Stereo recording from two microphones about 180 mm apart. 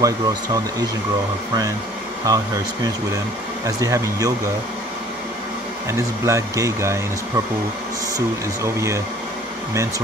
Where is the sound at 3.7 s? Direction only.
20° right (ahead or behind).